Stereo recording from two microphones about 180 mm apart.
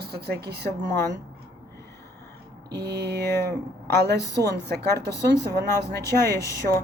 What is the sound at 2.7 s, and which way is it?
Speech, 65° right (ahead or behind).